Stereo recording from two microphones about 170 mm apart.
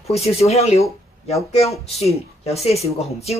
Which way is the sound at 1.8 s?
35° left (ahead or behind).